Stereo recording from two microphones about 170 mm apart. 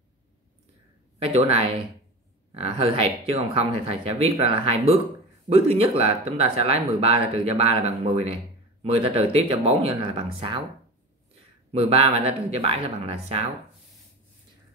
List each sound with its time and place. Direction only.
1.2 s speech: 35° right (ahead or behind)
11.7 s speech: 35° right (ahead or behind)